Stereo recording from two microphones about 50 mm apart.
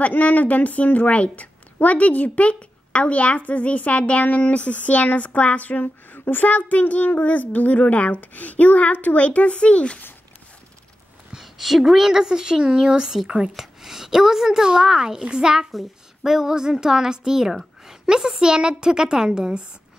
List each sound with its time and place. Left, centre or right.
0.0 s a woman's voice: left
11.3 s a woman's voice: centre
15.7 s a woman's voice: centre